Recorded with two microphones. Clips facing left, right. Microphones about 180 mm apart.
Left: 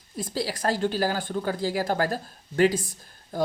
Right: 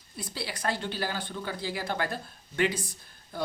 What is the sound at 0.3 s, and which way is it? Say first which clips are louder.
Speech: left 6 dB; 40° left (ahead or behind).